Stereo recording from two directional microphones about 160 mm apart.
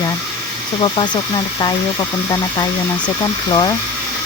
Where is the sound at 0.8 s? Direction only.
30° left (ahead or behind).